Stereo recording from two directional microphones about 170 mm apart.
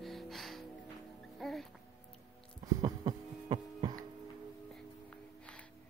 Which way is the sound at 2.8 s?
25° right (ahead or behind).